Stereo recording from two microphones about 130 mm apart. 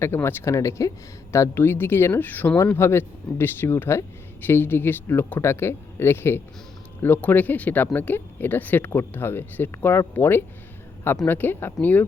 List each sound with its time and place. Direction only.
0.0 s speech: 20° left (ahead or behind)